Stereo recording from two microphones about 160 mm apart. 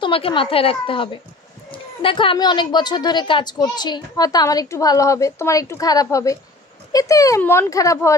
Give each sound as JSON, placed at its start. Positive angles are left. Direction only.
{"t": 0.0, "sound": "a woman's voice", "side_deg": 30}